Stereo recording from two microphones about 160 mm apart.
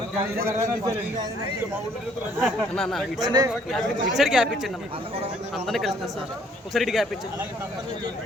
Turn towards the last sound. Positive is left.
turn(degrees=0)  # may be behind; listen again after turning